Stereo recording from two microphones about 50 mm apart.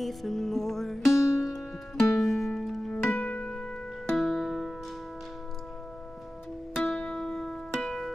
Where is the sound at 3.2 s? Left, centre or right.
Left.